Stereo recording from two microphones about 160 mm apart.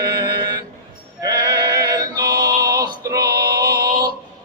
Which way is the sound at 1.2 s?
25° right (ahead or behind).